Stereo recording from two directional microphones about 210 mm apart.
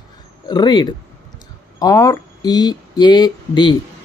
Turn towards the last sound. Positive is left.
turn(degrees=20)  # may be behind; listen again after turning